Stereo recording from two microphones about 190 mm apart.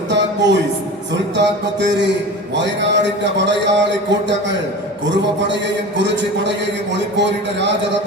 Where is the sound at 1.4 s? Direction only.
70° right (ahead or behind).